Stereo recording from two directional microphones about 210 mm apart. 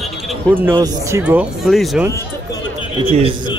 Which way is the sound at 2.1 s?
15° left (ahead or behind).